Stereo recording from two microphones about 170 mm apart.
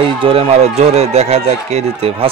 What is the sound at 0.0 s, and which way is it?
Speech, 35° right (ahead or behind).